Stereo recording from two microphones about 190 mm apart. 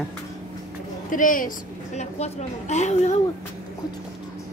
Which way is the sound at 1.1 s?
45° left (ahead or behind).